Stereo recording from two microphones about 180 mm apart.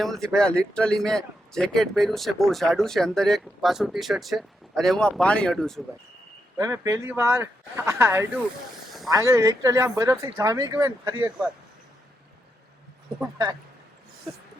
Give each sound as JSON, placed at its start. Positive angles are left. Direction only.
{"t": 0.0, "sound": "speech", "side_deg": 0}
{"t": 6.6, "sound": "speech", "side_deg": -15}